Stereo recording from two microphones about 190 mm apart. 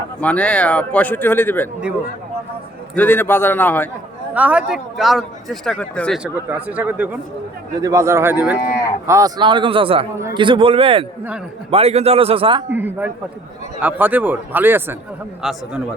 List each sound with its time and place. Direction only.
0.2 s a man's voice: 5° left (ahead or behind)
2.9 s a man's voice: 10° left (ahead or behind)
4.4 s a man's voice: 5° right (ahead or behind); by 10.1 s 30° right (ahead or behind)
10.2 s a man's voice: 15° right (ahead or behind)
10.4 s a man's voice: 25° right (ahead or behind)
12.7 s a man's voice: 10° right (ahead or behind)